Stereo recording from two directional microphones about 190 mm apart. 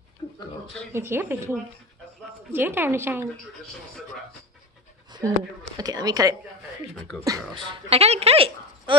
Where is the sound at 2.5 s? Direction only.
10° right (ahead or behind).